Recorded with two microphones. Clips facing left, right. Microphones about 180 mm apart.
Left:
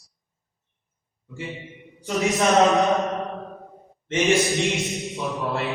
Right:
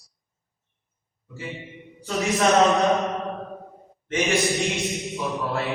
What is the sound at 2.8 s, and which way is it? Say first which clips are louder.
Mantra: even; centre (ahead or behind).